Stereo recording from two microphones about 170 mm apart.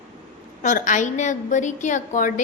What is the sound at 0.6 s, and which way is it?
A woman's voice, 50° left (ahead or behind).